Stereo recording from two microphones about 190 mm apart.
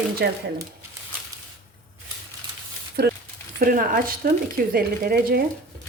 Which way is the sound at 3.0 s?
55° right (ahead or behind).